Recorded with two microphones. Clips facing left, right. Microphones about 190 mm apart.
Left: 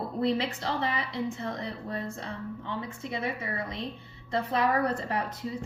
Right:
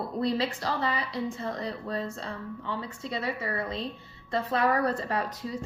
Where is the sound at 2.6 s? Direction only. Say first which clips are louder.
Right 1 dB; 20° left (ahead or behind).